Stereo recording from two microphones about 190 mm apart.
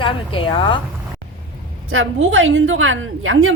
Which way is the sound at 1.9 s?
90° right.